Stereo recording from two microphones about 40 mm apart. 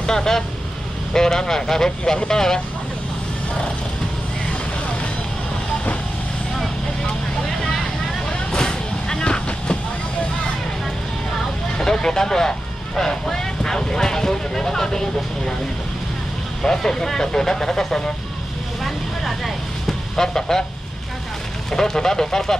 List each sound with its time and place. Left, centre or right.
0.0 s speech: centre
8.3 s vehicle: left
11.8 s speech: centre
16.6 s speech: centre
18.9 s vehicle: centre
21.6 s speech: centre